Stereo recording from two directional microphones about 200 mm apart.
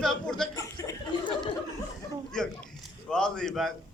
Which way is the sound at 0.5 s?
15° left (ahead or behind).